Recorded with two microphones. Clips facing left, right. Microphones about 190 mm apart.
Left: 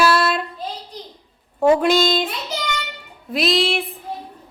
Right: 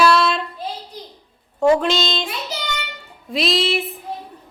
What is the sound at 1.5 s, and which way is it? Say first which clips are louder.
Speech: even; 15° left (ahead or behind).